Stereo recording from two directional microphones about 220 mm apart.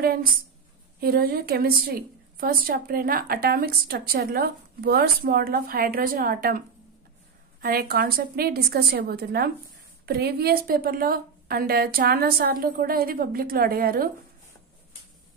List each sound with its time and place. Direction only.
0.0 s a woman's voice: 40° right (ahead or behind)
7.6 s a woman's voice: 40° right (ahead or behind)